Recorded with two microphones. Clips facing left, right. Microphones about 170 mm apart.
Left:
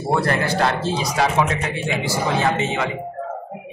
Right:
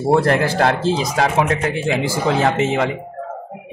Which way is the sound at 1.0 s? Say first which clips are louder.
Left 1 dB; 55° right (ahead or behind).